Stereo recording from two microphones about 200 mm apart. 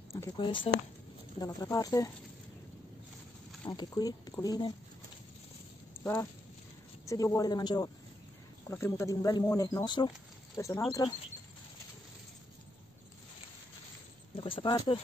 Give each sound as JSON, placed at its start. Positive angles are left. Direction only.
{"t": 0.1, "sound": "speech", "side_deg": 15}
{"t": 3.6, "sound": "speech", "side_deg": 20}
{"t": 7.1, "sound": "speech", "side_deg": 15}
{"t": 14.3, "sound": "a sound", "side_deg": 25}